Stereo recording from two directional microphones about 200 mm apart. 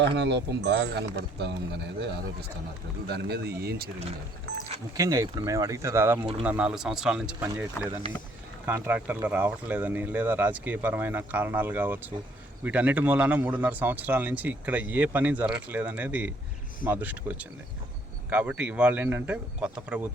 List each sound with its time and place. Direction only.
0.2 s a man's voice: 60° right (ahead or behind)
3.1 s speech: 55° right (ahead or behind)
4.5 s a sound: 65° right (ahead or behind)
4.9 s speech: 15° right (ahead or behind)